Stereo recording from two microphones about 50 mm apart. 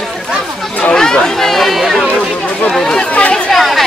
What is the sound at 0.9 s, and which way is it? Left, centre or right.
Speech, centre.